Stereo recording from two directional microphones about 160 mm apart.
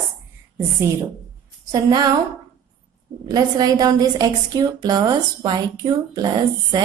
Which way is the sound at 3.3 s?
25° right (ahead or behind).